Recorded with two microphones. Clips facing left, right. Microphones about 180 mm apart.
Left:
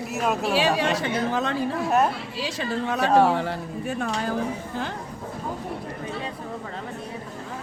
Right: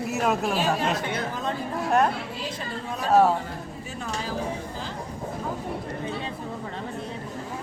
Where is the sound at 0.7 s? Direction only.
75° left (ahead or behind).